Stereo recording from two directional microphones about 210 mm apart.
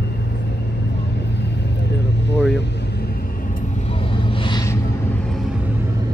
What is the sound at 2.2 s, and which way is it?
Vehicle, 55° left (ahead or behind).